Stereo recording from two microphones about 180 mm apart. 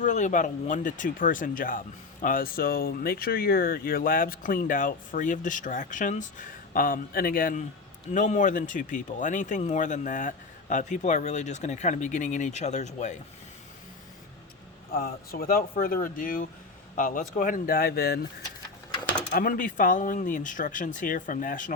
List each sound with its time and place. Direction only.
0.0 s speech: 45° left (ahead or behind)
14.9 s speech: 55° left (ahead or behind)
19.3 s speech: 50° left (ahead or behind)